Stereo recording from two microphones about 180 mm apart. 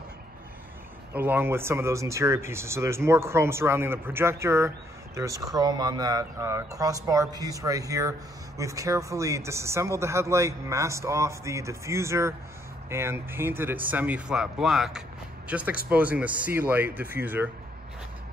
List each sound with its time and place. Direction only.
1.1 s speech: 10° right (ahead or behind)